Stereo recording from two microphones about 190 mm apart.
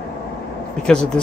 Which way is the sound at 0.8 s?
5° left (ahead or behind).